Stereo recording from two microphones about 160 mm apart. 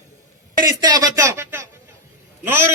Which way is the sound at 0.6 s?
25° right (ahead or behind).